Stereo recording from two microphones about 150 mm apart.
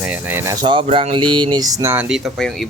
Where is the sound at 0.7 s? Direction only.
35° right (ahead or behind); by 2.0 s 20° right (ahead or behind).